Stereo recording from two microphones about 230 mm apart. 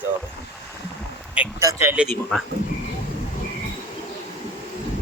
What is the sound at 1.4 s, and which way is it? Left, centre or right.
Speech, centre.